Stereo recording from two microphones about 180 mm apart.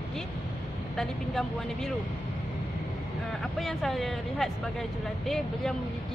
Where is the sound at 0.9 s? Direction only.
Centre (ahead or behind).